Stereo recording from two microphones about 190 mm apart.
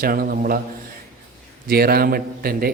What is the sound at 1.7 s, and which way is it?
A man's voice, 55° right (ahead or behind).